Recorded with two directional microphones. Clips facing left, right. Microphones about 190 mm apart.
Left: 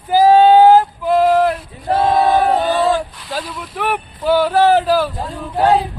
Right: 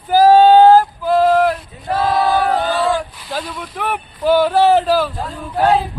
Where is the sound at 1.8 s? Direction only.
25° left (ahead or behind).